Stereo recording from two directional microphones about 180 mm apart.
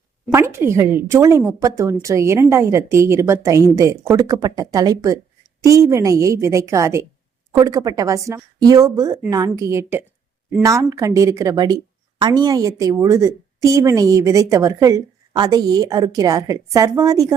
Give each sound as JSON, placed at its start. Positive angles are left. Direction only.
{"t": 0.3, "sound": "a woman's voice", "side_deg": -15}